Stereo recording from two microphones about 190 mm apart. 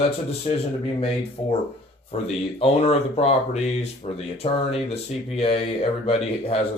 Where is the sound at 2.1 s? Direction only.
35° left (ahead or behind).